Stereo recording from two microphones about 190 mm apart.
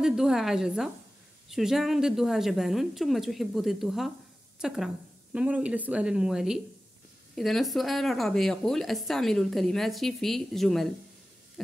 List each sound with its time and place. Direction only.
0.0 s a woman's voice: centre (ahead or behind)